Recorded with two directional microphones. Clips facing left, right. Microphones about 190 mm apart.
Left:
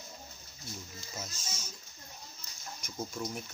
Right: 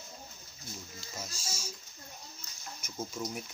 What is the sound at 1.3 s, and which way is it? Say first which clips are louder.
Music: right 2 dB; 30° right (ahead or behind).